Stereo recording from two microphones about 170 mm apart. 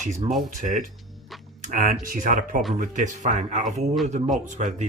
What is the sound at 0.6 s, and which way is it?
Speech, 50° right (ahead or behind).